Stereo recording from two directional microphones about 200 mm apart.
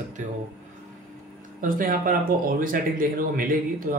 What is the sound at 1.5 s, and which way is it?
A man's voice, 45° right (ahead or behind).